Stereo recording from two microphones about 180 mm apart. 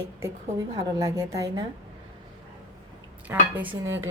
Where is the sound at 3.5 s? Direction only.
10° right (ahead or behind).